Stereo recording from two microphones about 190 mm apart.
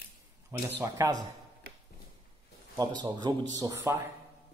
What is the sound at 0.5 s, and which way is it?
Speech, 15° right (ahead or behind).